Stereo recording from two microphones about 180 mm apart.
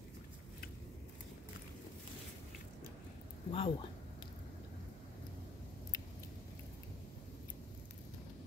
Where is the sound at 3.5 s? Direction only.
30° left (ahead or behind).